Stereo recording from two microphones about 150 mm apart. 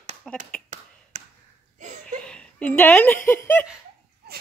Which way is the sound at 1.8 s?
55° right (ahead or behind).